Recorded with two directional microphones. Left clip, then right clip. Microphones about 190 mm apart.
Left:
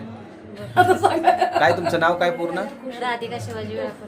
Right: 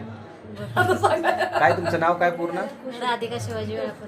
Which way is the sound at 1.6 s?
10° left (ahead or behind).